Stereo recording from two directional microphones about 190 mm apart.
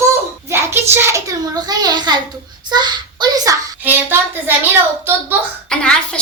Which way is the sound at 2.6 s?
20° right (ahead or behind).